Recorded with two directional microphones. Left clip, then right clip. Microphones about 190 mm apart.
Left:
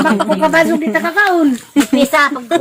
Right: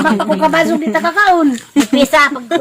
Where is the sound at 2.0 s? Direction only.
50° right (ahead or behind).